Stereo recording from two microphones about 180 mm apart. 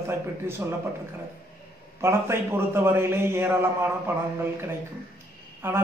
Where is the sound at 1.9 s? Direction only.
15° right (ahead or behind).